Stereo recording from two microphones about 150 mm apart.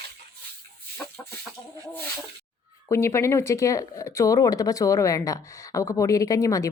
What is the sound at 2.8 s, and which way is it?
Speech, 20° left (ahead or behind).